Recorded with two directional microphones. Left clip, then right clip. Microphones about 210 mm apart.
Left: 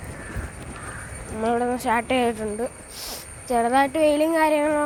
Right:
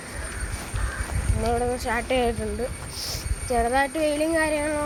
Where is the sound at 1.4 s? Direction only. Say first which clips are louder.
Left 2 dB; 50° left (ahead or behind).